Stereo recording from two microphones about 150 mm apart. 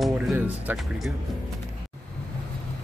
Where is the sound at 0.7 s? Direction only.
Centre (ahead or behind).